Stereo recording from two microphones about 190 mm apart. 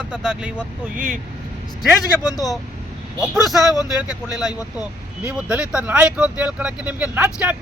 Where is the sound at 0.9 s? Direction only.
45° right (ahead or behind).